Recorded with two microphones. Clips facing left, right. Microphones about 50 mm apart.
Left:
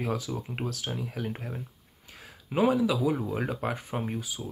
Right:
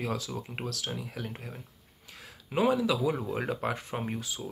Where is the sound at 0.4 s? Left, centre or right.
Centre.